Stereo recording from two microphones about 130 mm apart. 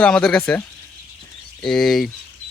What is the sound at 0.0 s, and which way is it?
Speech, 5° left (ahead or behind).